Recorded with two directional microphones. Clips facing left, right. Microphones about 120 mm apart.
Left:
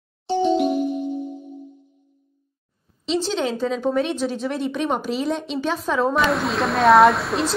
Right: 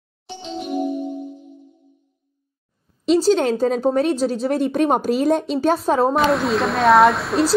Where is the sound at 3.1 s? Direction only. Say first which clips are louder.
Right 7 dB; 45° right (ahead or behind).